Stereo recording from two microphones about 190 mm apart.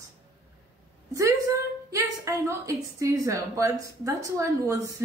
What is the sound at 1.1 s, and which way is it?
A woman's voice, 15° right (ahead or behind).